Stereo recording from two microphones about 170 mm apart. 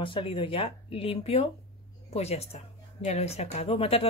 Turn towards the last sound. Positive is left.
turn(degrees=35)  # may be behind; listen again after turning